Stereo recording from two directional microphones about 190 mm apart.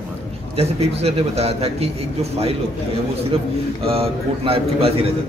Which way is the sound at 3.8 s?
30° right (ahead or behind).